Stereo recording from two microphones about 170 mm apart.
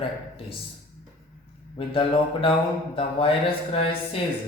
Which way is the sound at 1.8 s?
35° left (ahead or behind).